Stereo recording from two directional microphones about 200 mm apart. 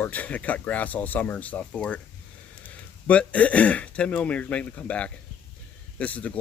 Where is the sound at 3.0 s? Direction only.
5° left (ahead or behind).